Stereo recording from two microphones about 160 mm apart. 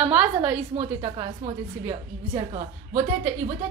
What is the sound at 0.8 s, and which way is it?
Speech, 35° right (ahead or behind).